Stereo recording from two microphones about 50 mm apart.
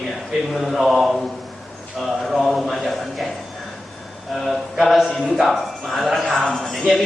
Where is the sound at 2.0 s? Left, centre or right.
Centre.